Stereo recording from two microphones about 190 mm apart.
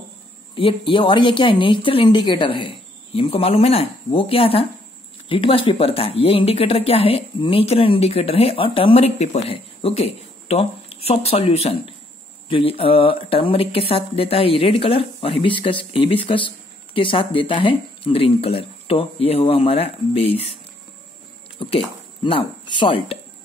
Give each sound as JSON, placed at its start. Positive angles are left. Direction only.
{"t": 0.6, "sound": "speech", "side_deg": 30}
{"t": 21.5, "sound": "speech", "side_deg": 30}